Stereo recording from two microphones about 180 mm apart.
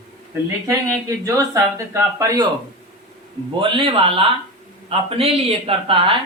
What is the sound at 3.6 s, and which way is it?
Speech, 30° right (ahead or behind).